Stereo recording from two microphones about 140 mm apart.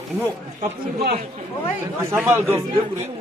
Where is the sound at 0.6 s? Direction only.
50° right (ahead or behind).